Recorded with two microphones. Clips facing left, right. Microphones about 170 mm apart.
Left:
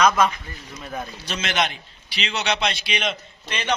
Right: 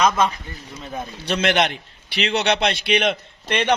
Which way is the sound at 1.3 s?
60° right (ahead or behind).